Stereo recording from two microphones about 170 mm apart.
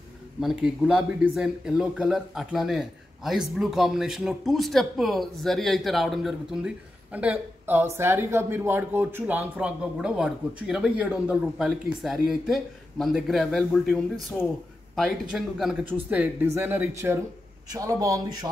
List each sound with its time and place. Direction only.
0.4 s a man's voice: centre (ahead or behind); by 18.5 s 20° right (ahead or behind)